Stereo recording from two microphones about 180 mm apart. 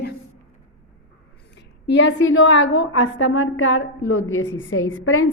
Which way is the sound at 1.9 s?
85° left.